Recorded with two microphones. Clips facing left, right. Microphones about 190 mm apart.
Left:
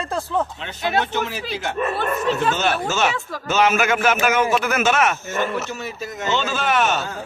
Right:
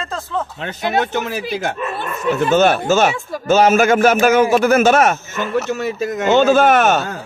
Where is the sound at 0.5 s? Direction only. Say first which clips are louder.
Right 3 dB; 45° right (ahead or behind).